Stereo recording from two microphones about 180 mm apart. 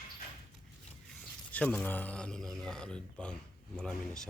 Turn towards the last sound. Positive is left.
turn(degrees=5)  # may be behind; listen again after turning